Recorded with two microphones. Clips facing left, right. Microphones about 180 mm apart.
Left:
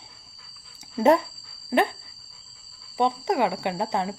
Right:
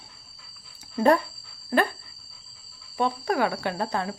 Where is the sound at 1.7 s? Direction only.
20° left (ahead or behind).